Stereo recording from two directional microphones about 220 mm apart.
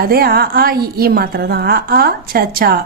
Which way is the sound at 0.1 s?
45° right (ahead or behind).